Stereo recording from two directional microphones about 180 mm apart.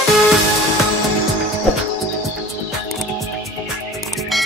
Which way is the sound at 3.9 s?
Centre (ahead or behind).